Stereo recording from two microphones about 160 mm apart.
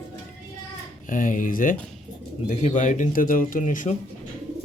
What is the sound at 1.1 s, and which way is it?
Speech, 55° left (ahead or behind).